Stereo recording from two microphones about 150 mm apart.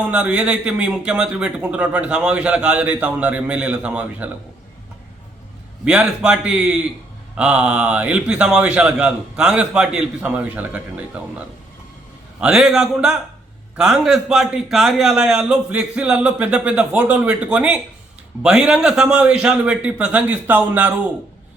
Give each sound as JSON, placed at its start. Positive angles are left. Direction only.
{"t": 0.0, "sound": "a man's voice", "side_deg": -10}
{"t": 5.8, "sound": "a man's voice", "side_deg": -5}